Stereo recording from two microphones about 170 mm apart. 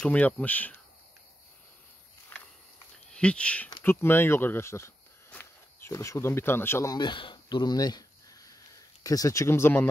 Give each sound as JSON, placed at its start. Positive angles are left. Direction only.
{"t": 0.0, "sound": "speech", "side_deg": 10}
{"t": 2.3, "sound": "a sound", "side_deg": 10}
{"t": 3.1, "sound": "speech", "side_deg": 5}